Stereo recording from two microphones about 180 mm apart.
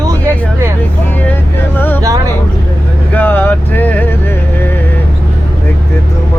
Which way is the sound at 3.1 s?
10° left (ahead or behind).